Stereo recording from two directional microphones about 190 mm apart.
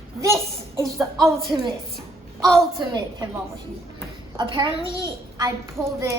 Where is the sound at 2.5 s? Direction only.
25° right (ahead or behind).